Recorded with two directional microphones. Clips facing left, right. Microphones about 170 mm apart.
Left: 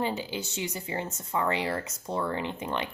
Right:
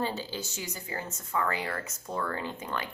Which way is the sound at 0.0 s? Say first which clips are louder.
Left 2 dB; 15° left (ahead or behind).